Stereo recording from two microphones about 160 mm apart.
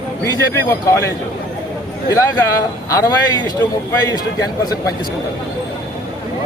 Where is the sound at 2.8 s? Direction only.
20° left (ahead or behind).